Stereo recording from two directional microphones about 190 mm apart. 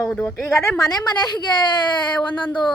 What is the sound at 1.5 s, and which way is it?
Speech, 25° left (ahead or behind).